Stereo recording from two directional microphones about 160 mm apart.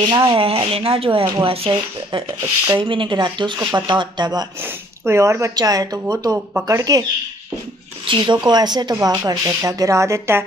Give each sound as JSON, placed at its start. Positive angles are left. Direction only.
{"t": 0.3, "sound": "a woman's voice", "side_deg": -35}
{"t": 4.6, "sound": "a woman's voice", "side_deg": -15}
{"t": 8.1, "sound": "a woman's voice", "side_deg": -30}